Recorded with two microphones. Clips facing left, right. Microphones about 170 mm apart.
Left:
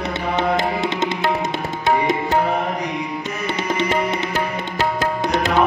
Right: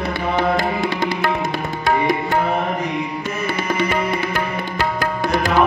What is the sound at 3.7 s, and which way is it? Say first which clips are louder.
Music: even; 20° left (ahead or behind).